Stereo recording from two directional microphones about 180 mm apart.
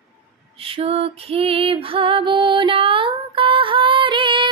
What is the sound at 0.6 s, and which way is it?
Female singing, 30° right (ahead or behind).